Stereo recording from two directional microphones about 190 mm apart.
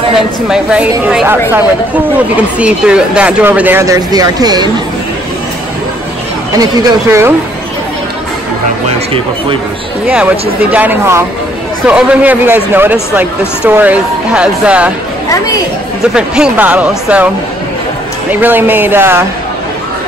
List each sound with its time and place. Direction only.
0.5 s speech: 5° right (ahead or behind); by 4.6 s 20° right (ahead or behind)
6.6 s speech: 15° right (ahead or behind)
10.0 s speech: 5° right (ahead or behind)
15.2 s speech: 15° left (ahead or behind)
16.2 s speech: 5° right (ahead or behind)
18.3 s speech: 10° right (ahead or behind)